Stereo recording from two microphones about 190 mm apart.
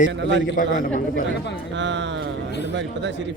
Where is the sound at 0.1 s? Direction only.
70° right (ahead or behind).